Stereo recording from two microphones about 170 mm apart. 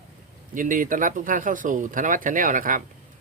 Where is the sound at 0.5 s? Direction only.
50° right (ahead or behind).